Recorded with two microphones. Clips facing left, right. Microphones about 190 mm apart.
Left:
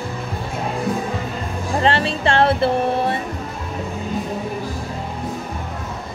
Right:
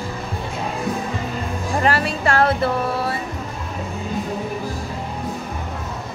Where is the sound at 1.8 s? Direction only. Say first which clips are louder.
Left 2 dB; 25° left (ahead or behind).